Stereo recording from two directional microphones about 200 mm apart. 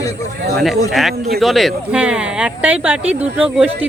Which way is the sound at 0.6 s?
Centre (ahead or behind).